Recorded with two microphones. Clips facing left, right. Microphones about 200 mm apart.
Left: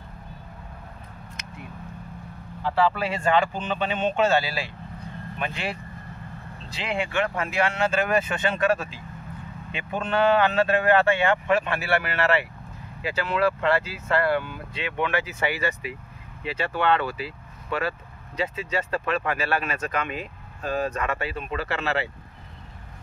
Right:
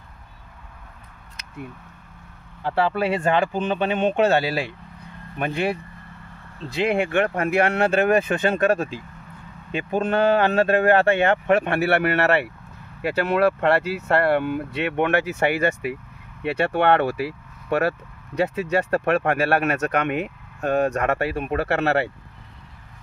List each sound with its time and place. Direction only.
2.6 s speech: 55° right (ahead or behind)